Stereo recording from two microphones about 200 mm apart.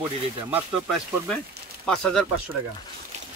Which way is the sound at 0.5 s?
Centre (ahead or behind).